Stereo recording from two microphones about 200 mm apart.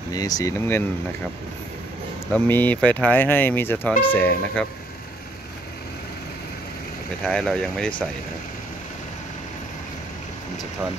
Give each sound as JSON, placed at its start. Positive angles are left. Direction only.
{"t": 0.1, "sound": "speech", "side_deg": 20}
{"t": 2.3, "sound": "speech", "side_deg": 10}
{"t": 7.2, "sound": "speech", "side_deg": 0}